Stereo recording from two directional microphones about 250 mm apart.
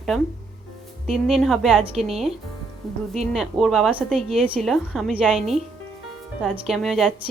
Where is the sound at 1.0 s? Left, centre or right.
Centre.